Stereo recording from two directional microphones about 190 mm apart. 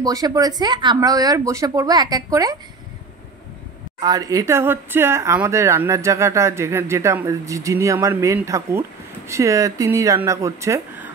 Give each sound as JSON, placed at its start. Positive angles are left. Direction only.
{"t": 0.0, "sound": "speech", "side_deg": -20}
{"t": 4.0, "sound": "speech", "side_deg": -20}